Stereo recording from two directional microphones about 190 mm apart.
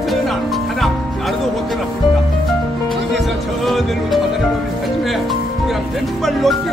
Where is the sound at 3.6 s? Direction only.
Centre (ahead or behind).